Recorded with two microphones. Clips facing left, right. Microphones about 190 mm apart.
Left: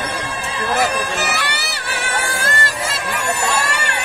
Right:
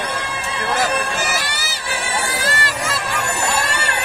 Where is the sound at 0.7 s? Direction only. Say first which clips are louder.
Left 1 dB; 60° left (ahead or behind).